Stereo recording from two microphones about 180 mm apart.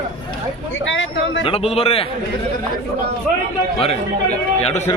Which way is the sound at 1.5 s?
35° left (ahead or behind).